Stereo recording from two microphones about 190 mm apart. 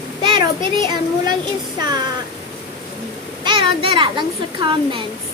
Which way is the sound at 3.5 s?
25° right (ahead or behind).